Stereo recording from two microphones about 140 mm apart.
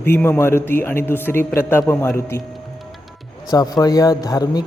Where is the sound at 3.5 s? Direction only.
25° left (ahead or behind).